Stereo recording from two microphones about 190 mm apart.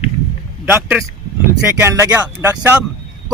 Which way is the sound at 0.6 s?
10° right (ahead or behind).